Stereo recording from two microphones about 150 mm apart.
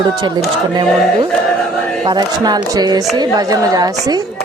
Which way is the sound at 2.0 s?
30° right (ahead or behind).